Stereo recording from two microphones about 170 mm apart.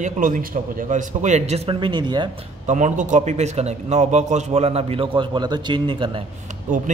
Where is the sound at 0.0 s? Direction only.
50° right (ahead or behind); by 2.3 s 25° right (ahead or behind).